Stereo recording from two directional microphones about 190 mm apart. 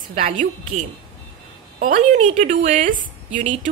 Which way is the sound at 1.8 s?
45° right (ahead or behind).